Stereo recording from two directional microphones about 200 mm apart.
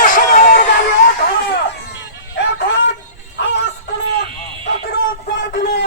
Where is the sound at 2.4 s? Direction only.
60° left (ahead or behind).